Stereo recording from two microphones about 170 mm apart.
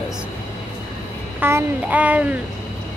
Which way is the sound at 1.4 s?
15° right (ahead or behind).